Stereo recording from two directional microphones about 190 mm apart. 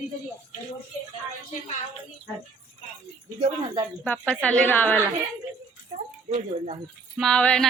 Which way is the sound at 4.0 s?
5° left (ahead or behind).